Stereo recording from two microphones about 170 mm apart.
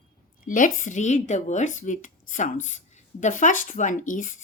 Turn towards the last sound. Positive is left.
turn(degrees=50)  # may be behind; listen again after turning